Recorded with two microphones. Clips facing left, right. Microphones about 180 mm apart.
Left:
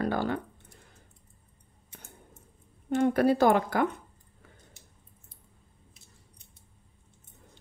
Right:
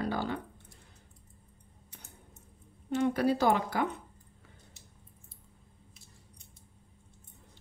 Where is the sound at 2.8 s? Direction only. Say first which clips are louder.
Left 4 dB; 50° left (ahead or behind).